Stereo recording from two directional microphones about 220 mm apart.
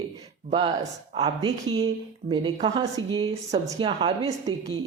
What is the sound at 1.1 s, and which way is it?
A woman's voice, 20° right (ahead or behind).